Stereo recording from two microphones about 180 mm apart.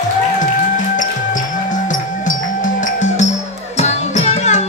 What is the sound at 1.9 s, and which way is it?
Music, 45° left (ahead or behind).